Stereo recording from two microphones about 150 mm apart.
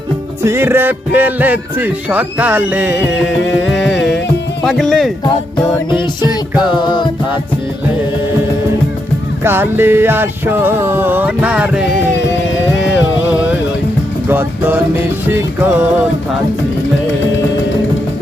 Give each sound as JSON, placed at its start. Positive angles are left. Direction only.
{"t": 0.4, "sound": "speech", "side_deg": -15}
{"t": 3.5, "sound": "music", "side_deg": 0}
{"t": 4.6, "sound": "speech", "side_deg": 0}
{"t": 6.5, "sound": "speech", "side_deg": -5}
{"t": 6.7, "sound": "music", "side_deg": 30}
{"t": 9.4, "sound": "speech", "side_deg": -15}
{"t": 14.3, "sound": "music", "side_deg": -15}